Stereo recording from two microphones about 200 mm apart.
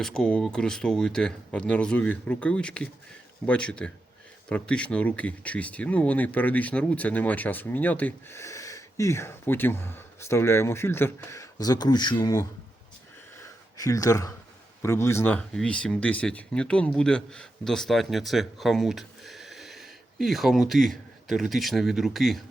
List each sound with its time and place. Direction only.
0.0 s speech: 5° left (ahead or behind); by 12.5 s 20° left (ahead or behind)
13.4 s a sound: 15° left (ahead or behind)
14.8 s speech: 15° left (ahead or behind)